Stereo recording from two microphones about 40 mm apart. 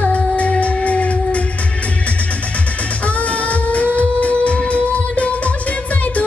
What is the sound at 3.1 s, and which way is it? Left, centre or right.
Music, left.